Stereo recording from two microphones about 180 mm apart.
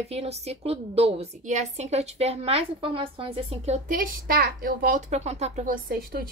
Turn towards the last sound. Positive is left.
turn(degrees=-55)  # may be behind; listen again after turning